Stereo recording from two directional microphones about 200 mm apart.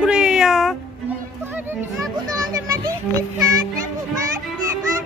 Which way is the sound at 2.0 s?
15° right (ahead or behind).